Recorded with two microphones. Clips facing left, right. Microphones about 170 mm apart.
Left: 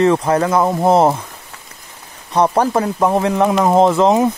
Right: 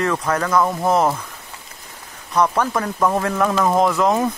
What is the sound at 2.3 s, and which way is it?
Speech, 30° left (ahead or behind).